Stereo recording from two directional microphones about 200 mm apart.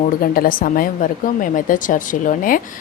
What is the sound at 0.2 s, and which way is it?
A woman's voice, 45° left (ahead or behind).